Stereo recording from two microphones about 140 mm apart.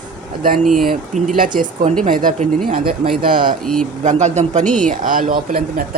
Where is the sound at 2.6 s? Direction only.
85° right.